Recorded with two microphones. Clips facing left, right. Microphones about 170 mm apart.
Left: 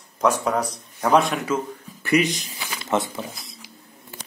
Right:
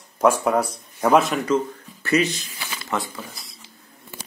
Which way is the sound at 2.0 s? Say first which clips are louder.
Left 1 dB; 15° left (ahead or behind).